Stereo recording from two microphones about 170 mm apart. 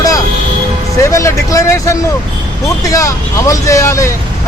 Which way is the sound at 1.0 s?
15° left (ahead or behind).